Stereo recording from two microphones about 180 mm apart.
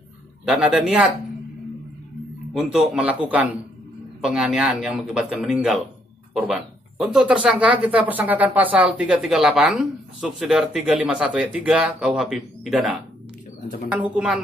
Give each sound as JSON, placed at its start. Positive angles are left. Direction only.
{"t": 0.5, "sound": "speech", "side_deg": -5}
{"t": 2.5, "sound": "speech", "side_deg": 0}
{"t": 7.0, "sound": "speech", "side_deg": 0}